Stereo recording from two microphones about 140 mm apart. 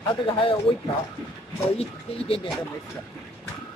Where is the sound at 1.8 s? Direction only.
45° left (ahead or behind).